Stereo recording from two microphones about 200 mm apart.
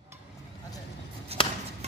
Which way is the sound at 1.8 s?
30° right (ahead or behind).